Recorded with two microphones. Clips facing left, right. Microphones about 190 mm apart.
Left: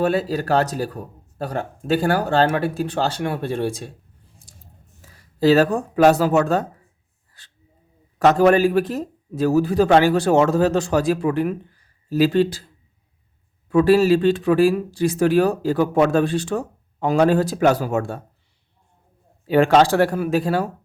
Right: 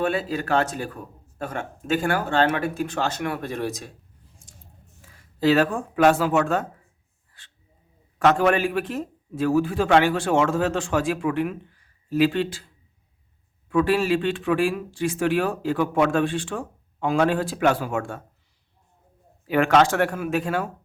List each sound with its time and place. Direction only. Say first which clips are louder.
0.0 s speech: left 4 dB; 40° left (ahead or behind)
4.4 s scissors: even; 35° left (ahead or behind)
5.0 s speech: left 4 dB; 40° left (ahead or behind)
8.2 s speech: left 5 dB; 40° left (ahead or behind)
19.5 s speech: left 4 dB; 30° left (ahead or behind)